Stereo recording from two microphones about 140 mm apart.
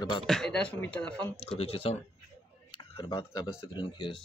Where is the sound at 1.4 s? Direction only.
40° left (ahead or behind).